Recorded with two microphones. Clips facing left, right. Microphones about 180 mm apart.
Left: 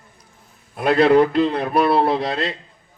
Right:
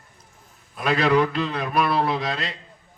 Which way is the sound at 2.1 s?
60° left (ahead or behind).